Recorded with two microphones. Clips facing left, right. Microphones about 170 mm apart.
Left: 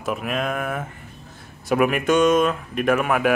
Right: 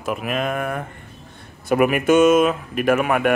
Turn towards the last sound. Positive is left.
turn(degrees=0)  # may be behind; listen again after turning